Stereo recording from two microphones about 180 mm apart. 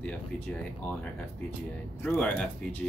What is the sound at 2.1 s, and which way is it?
Speech, 5° left (ahead or behind).